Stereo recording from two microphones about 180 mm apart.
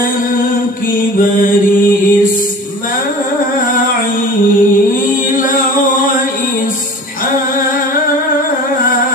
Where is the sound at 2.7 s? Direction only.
50° left (ahead or behind).